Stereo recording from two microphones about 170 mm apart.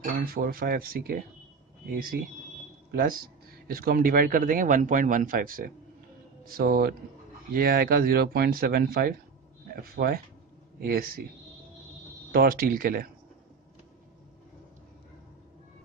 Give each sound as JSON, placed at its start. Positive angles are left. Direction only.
{"t": 0.2, "sound": "speech", "side_deg": -60}
{"t": 12.3, "sound": "speech", "side_deg": -60}